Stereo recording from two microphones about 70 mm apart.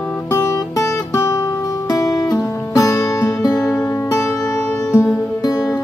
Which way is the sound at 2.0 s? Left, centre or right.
Left.